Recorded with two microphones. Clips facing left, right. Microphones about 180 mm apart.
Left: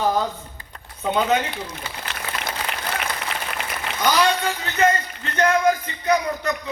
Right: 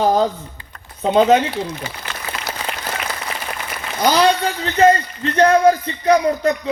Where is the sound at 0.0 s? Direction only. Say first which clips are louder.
Right 6 dB; 35° right (ahead or behind).